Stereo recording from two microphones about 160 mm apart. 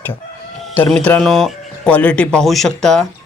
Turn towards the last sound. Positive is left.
turn(degrees=5)  # may be behind; listen again after turning